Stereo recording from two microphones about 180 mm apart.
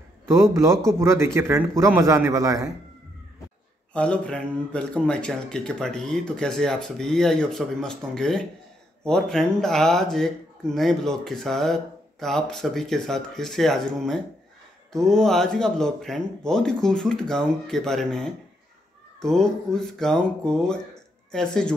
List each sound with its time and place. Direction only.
0.3 s a man's voice: 15° right (ahead or behind)
3.9 s speech: 5° left (ahead or behind)